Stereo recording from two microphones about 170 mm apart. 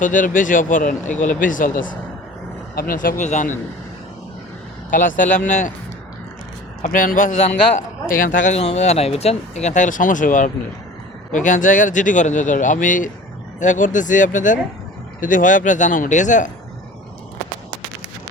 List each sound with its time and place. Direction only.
0.0 s speech: 50° left (ahead or behind)
4.9 s speech: 50° left (ahead or behind)
6.8 s speech: 55° left (ahead or behind)